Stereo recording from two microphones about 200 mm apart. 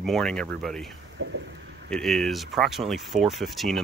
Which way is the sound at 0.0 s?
Centre (ahead or behind).